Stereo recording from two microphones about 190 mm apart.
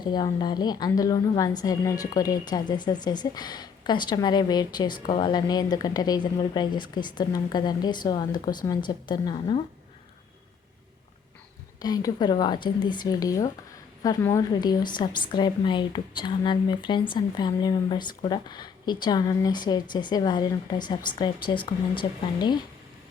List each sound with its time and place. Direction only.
0.0 s a woman's voice: 20° left (ahead or behind)
11.8 s a woman's voice: 20° left (ahead or behind)